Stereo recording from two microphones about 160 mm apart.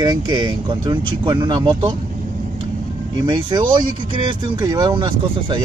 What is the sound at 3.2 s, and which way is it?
Speech, 30° right (ahead or behind).